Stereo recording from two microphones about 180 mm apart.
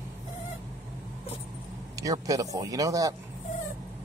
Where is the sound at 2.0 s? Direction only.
20° right (ahead or behind).